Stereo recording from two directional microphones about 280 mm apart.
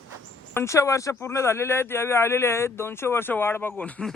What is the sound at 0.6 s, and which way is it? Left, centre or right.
Speech, centre.